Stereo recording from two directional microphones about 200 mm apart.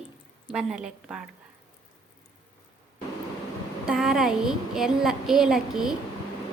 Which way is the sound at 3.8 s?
Centre (ahead or behind).